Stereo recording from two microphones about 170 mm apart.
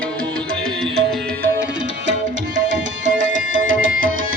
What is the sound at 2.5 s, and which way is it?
Tabla, 50° right (ahead or behind).